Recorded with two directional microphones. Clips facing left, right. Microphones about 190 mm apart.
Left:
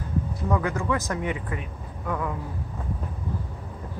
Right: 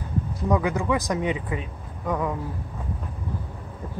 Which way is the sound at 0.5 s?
15° right (ahead or behind).